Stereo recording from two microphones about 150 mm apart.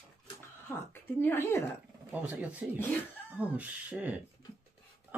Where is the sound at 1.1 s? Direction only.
15° left (ahead or behind).